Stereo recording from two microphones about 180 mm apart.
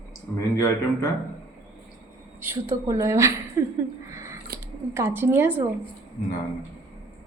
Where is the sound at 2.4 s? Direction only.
15° right (ahead or behind).